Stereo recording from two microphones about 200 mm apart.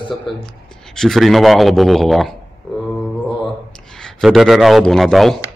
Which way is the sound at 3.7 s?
5° left (ahead or behind).